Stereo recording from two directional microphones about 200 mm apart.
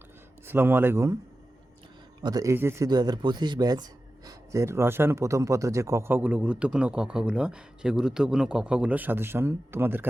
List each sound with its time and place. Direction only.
0.4 s speech: 10° right (ahead or behind)
2.2 s speech: 15° right (ahead or behind)